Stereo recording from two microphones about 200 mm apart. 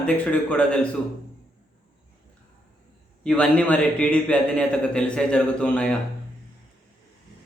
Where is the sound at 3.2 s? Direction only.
5° left (ahead or behind).